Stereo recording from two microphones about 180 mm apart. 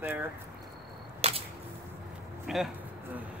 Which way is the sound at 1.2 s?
35° right (ahead or behind).